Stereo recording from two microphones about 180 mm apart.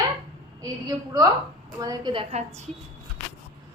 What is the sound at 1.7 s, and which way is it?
Speech, 20° right (ahead or behind).